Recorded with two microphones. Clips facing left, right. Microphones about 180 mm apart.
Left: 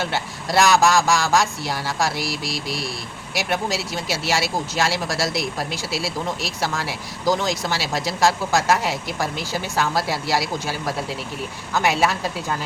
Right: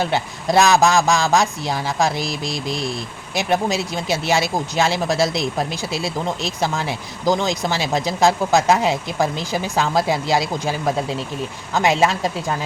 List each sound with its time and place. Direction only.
0.0 s speech: 20° right (ahead or behind)